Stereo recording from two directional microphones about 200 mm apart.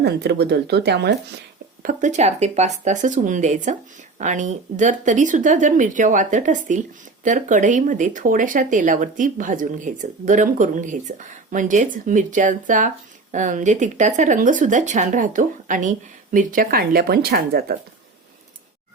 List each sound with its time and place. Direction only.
0.0 s speech: 55° right (ahead or behind)
1.8 s speech: 40° right (ahead or behind)